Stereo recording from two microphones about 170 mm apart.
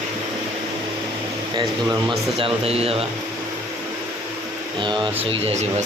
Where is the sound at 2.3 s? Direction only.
35° right (ahead or behind).